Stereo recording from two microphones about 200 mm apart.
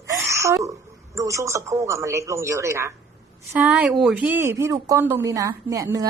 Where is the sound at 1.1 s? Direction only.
15° right (ahead or behind).